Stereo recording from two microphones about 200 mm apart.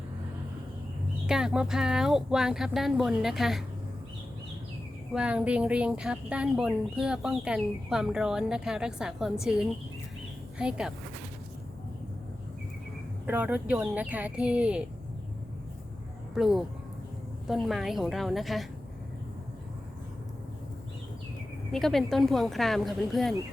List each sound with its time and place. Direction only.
1.3 s speech: 5° right (ahead or behind)
5.1 s speech: 5° right (ahead or behind)
10.6 s speech: 5° right (ahead or behind)
13.2 s speech: 10° right (ahead or behind)
16.3 s speech: centre (ahead or behind)
21.7 s speech: centre (ahead or behind)